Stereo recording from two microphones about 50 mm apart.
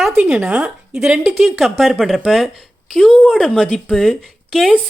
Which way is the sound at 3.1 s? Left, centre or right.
Centre.